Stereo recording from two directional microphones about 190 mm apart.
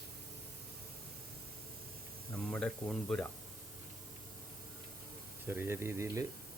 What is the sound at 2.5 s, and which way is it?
Speech, 5° left (ahead or behind).